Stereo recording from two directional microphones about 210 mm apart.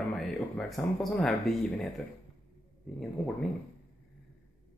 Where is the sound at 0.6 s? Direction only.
Centre (ahead or behind).